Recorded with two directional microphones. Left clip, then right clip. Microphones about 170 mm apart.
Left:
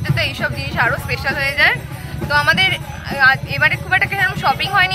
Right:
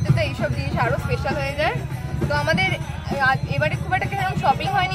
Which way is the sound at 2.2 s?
15° right (ahead or behind).